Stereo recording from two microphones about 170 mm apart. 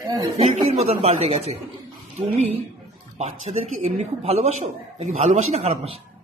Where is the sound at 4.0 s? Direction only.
40° right (ahead or behind).